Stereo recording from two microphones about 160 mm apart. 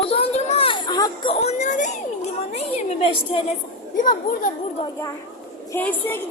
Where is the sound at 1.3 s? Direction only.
40° left (ahead or behind).